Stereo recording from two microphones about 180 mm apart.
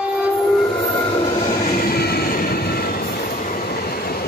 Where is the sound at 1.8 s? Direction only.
60° left (ahead or behind).